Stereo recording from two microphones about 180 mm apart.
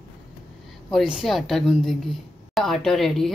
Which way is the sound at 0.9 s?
Centre (ahead or behind).